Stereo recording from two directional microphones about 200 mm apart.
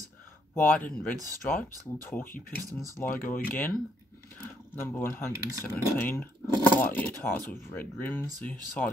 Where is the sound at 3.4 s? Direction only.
10° left (ahead or behind).